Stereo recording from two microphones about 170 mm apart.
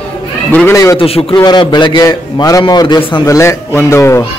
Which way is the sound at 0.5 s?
15° left (ahead or behind).